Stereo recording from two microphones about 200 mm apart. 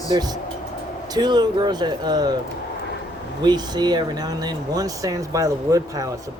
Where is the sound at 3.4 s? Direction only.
20° right (ahead or behind).